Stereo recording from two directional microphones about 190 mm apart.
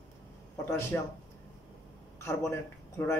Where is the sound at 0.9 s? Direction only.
10° left (ahead or behind).